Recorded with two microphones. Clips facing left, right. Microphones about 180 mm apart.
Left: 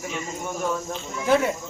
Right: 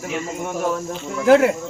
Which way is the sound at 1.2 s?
80° right.